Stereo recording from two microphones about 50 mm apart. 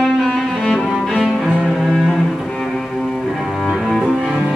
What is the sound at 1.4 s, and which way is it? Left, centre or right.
Cello, centre.